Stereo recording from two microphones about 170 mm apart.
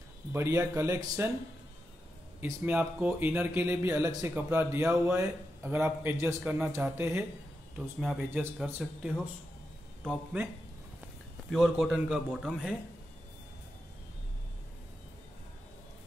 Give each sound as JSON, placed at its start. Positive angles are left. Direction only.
{"t": 0.3, "sound": "speech", "side_deg": -15}
{"t": 2.4, "sound": "speech", "side_deg": -10}
{"t": 8.6, "sound": "a man's voice", "side_deg": -10}
{"t": 11.5, "sound": "a man's voice", "side_deg": 0}